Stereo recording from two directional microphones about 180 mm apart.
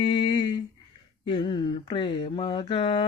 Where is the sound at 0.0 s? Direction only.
25° left (ahead or behind).